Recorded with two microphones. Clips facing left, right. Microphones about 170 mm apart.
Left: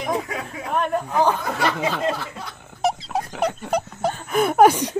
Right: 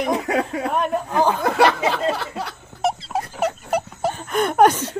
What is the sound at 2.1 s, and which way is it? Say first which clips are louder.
Speech: right 4 dB; 75° right (ahead or behind).